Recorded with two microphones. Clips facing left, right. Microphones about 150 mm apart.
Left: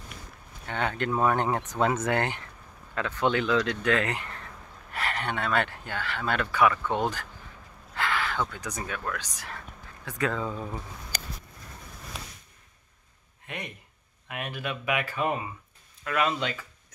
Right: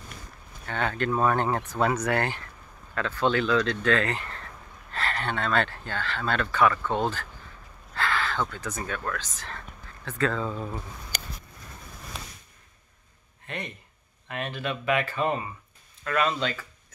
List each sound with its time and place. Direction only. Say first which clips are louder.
0.7 s speech: right 1 dB; 20° left (ahead or behind)
13.5 s speech: right 2 dB; 10° left (ahead or behind)